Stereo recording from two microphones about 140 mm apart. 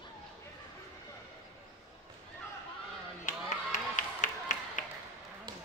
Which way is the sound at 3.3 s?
65° left (ahead or behind).